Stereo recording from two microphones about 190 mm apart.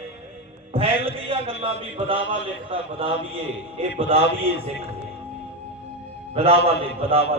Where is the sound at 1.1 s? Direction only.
30° right (ahead or behind).